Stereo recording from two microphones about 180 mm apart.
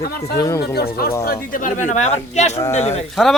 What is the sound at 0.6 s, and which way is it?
Speech, 60° left (ahead or behind).